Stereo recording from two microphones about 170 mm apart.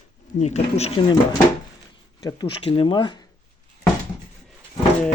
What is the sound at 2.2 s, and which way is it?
Speech, 30° left (ahead or behind).